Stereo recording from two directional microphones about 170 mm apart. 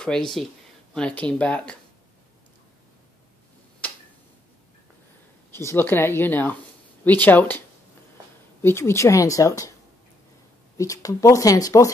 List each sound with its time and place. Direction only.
0.0 s speech: 5° left (ahead or behind)
3.8 s tick-tock: 10° left (ahead or behind)
5.5 s speech: 15° left (ahead or behind)
8.6 s speech: 15° left (ahead or behind)
10.8 s speech: 20° left (ahead or behind)